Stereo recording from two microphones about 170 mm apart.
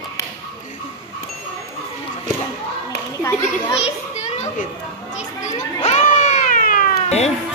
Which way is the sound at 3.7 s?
40° left (ahead or behind).